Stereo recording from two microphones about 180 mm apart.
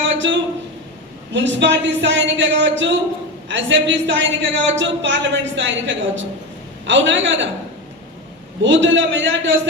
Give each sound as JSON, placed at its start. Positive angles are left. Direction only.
{"t": 0.0, "sound": "a sound", "side_deg": -90}
{"t": 1.3, "sound": "a man's voice", "side_deg": -85}
{"t": 8.6, "sound": "a man's voice", "side_deg": -90}